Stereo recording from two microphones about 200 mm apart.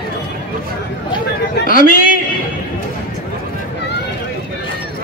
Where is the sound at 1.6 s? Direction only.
45° left (ahead or behind).